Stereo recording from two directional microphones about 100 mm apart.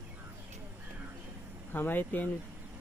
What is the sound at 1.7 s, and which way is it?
Speech, 20° left (ahead or behind).